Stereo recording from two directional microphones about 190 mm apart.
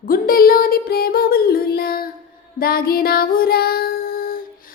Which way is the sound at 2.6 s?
50° left (ahead or behind).